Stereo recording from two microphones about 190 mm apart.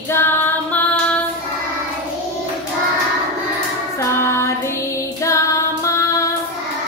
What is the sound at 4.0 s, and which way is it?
Child singing, 15° left (ahead or behind).